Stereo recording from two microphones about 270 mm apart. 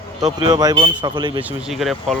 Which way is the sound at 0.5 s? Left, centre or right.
Centre.